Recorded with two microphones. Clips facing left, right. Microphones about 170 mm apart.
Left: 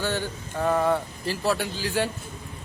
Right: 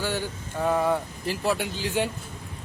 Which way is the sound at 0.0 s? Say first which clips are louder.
Left 1 dB; 10° right (ahead or behind).